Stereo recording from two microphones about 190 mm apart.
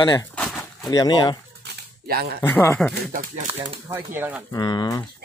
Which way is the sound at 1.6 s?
55° right (ahead or behind).